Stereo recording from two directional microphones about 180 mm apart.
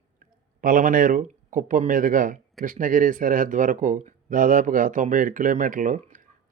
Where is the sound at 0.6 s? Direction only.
50° right (ahead or behind).